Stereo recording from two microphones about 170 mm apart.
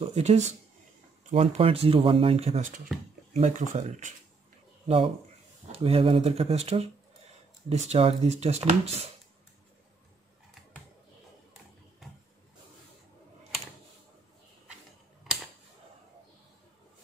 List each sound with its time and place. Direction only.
0.0 s speech: 40° right (ahead or behind)
4.8 s speech: 35° right (ahead or behind)